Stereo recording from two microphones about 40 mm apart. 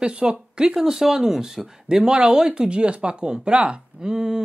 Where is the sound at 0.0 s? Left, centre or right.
Right.